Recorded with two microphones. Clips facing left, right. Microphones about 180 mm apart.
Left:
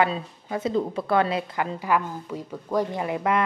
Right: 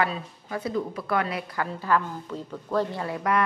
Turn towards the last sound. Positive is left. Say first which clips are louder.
# left 2 dB
turn(degrees=20)  # may be behind; listen again after turning